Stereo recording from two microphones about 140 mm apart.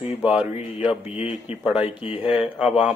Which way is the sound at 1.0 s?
45° left (ahead or behind).